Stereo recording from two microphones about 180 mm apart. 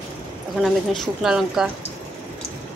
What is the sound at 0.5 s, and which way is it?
Speech, centre (ahead or behind).